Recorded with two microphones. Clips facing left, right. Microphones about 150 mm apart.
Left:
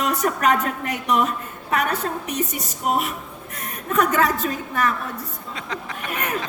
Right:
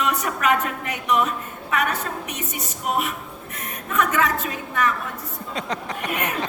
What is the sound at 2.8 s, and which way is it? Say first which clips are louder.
Speech: left 2 dB; 40° left (ahead or behind).